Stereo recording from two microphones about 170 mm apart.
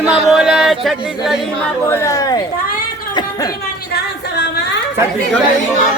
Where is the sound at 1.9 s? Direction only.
20° left (ahead or behind).